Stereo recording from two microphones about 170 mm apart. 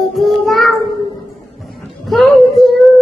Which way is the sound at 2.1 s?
Centre (ahead or behind).